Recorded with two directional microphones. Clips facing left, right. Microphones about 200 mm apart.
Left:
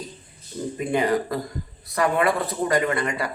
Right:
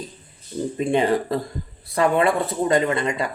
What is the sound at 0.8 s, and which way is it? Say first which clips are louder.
Speech: right 2 dB; 25° right (ahead or behind).